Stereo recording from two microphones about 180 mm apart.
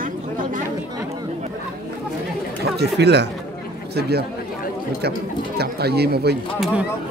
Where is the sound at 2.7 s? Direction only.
70° right (ahead or behind).